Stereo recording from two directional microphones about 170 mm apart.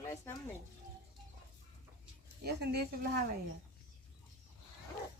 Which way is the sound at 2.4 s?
70° right (ahead or behind).